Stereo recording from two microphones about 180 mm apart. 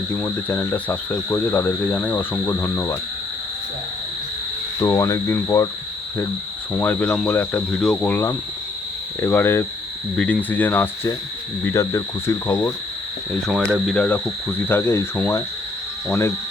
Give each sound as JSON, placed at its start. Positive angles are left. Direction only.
{"t": 0.1, "sound": "speech", "side_deg": 10}
{"t": 4.8, "sound": "speech", "side_deg": 15}
{"t": 6.7, "sound": "speech", "side_deg": 10}
{"t": 13.6, "sound": "speech", "side_deg": -10}
{"t": 13.8, "sound": "speech", "side_deg": 5}